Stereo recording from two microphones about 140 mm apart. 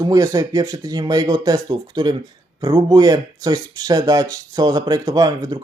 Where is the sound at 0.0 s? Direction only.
25° right (ahead or behind).